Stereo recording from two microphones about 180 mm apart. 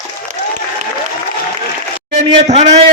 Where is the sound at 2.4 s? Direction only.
35° right (ahead or behind).